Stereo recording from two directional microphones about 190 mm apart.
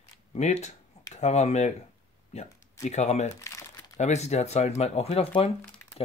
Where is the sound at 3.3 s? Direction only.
15° left (ahead or behind).